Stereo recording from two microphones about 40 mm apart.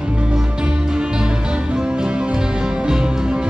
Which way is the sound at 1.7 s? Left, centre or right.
Right.